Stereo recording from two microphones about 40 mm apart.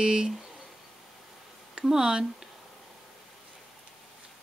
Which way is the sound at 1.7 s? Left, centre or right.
Centre.